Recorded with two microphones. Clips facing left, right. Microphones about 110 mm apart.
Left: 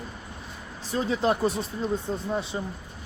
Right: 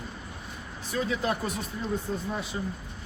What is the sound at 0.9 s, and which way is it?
Speech, 30° left (ahead or behind).